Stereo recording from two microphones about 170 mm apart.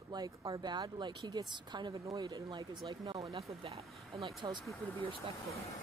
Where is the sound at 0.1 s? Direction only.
25° right (ahead or behind).